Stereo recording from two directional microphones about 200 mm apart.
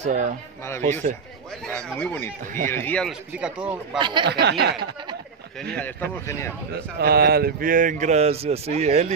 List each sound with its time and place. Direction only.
0.0 s speech: 40° right (ahead or behind)
1.7 s speech: 5° left (ahead or behind)
3.1 s speech: 5° right (ahead or behind)
4.0 s speech: 25° right (ahead or behind)
4.3 s speech: 55° right (ahead or behind)
5.8 s speech: 10° left (ahead or behind)
6.7 s speech: 50° right (ahead or behind); by 9.1 s 35° right (ahead or behind)